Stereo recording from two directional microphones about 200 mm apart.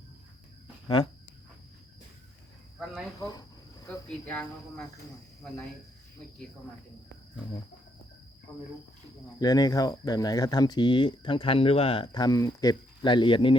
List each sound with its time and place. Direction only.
2.8 s speech: 5° right (ahead or behind)
3.2 s cricket: 20° left (ahead or behind)
3.8 s cricket: 5° left (ahead or behind)
9.4 s speech: 20° left (ahead or behind)